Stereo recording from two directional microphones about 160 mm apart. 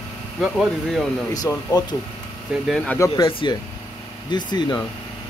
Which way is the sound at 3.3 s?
35° left (ahead or behind).